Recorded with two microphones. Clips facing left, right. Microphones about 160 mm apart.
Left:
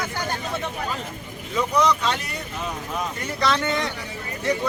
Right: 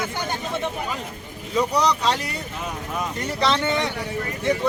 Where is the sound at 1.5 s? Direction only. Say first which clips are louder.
Even; 35° right (ahead or behind).